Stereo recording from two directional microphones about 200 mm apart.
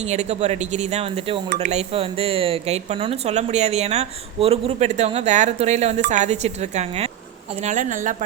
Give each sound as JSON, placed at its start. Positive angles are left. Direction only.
{"t": 0.0, "sound": "speech", "side_deg": -35}